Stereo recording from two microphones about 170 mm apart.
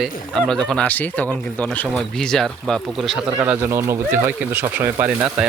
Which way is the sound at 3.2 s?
20° right (ahead or behind).